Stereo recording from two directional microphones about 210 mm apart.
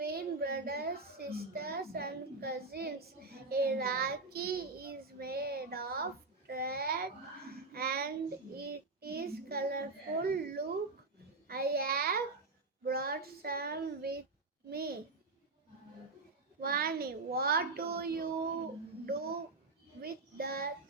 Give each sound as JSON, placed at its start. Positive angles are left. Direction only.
{"t": 0.0, "sound": "a sound", "side_deg": -45}
{"t": 8.5, "sound": "child singing", "side_deg": -45}
{"t": 10.2, "sound": "a sound", "side_deg": -45}
{"t": 12.8, "sound": "a child's voice", "side_deg": -45}
{"t": 16.6, "sound": "a child's voice", "side_deg": -45}
{"t": 20.0, "sound": "child singing", "side_deg": -45}